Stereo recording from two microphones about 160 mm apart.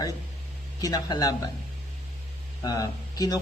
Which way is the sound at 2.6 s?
25° left (ahead or behind).